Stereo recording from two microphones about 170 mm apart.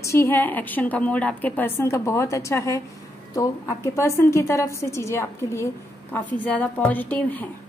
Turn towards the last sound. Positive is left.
turn(degrees=10)  # may be behind; listen again after turning